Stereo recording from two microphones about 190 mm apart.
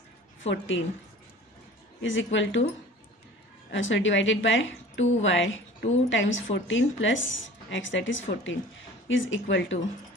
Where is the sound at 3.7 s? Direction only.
80° left.